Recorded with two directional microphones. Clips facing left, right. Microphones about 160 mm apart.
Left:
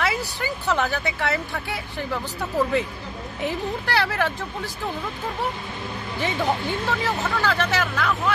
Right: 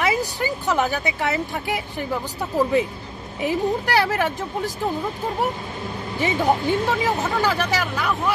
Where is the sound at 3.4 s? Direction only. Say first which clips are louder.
Right 5 dB; 15° right (ahead or behind).